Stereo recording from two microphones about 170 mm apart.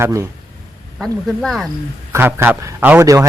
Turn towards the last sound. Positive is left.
turn(degrees=-15)  # may be behind; listen again after turning